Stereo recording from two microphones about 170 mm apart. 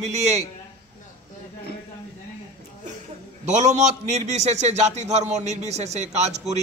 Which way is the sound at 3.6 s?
40° right (ahead or behind).